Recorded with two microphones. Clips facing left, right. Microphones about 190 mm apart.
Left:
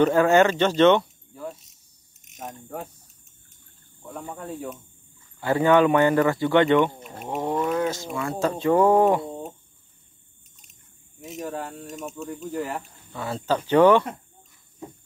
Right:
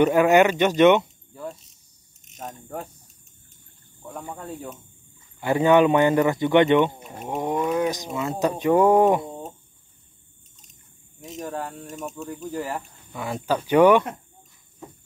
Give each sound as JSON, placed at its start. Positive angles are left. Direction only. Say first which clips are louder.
{"t": 0.0, "sound": "speech", "louder": "right 1 dB", "side_deg": -15}
{"t": 2.3, "sound": "speech", "louder": "right 1 dB", "side_deg": 5}
{"t": 4.1, "sound": "speech", "louder": "left 1 dB", "side_deg": -5}
{"t": 5.4, "sound": "speech", "louder": "right 1 dB", "side_deg": -20}
{"t": 11.1, "sound": "speech", "louder": "even", "side_deg": 5}
{"t": 13.1, "sound": "speech", "louder": "even", "side_deg": -15}